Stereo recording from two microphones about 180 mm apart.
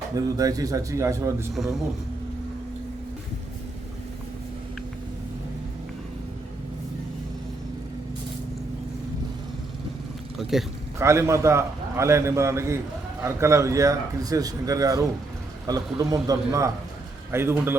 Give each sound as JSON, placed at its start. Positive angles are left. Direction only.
{"t": 0.2, "sound": "a man's voice", "side_deg": -20}
{"t": 1.5, "sound": "a man's voice", "side_deg": 0}
{"t": 10.3, "sound": "vehicle", "side_deg": 0}
{"t": 10.9, "sound": "a man's voice", "side_deg": -15}